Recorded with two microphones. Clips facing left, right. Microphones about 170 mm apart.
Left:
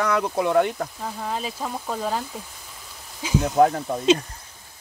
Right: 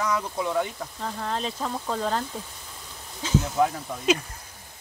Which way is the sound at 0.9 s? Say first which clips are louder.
Left 1 dB; 5° left (ahead or behind).